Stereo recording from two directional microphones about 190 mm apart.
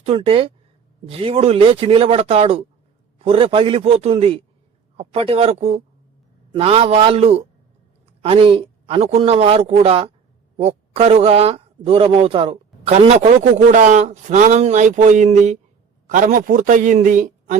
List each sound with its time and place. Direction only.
0.0 s a man's voice: 30° right (ahead or behind)